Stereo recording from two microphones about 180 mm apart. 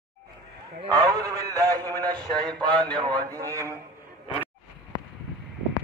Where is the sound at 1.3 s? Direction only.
20° right (ahead or behind).